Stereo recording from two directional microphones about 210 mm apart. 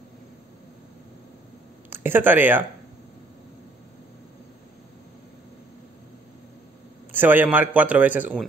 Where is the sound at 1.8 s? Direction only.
10° right (ahead or behind).